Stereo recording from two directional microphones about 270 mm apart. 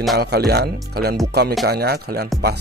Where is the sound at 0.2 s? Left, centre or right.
Right.